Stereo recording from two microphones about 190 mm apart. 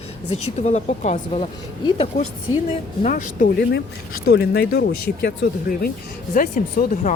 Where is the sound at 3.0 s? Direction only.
45° left (ahead or behind).